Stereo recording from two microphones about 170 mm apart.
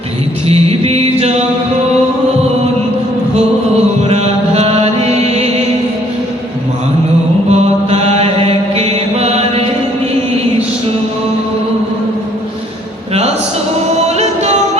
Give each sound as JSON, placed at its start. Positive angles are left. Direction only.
{"t": 0.4, "sound": "music", "side_deg": -35}
{"t": 4.1, "sound": "music", "side_deg": -40}
{"t": 7.5, "sound": "mantra", "side_deg": -40}